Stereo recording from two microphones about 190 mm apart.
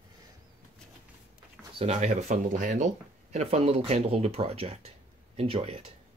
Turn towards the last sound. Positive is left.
turn(degrees=-30)  # may be behind; listen again after turning